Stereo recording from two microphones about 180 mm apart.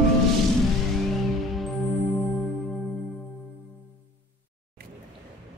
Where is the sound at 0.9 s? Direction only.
Centre (ahead or behind).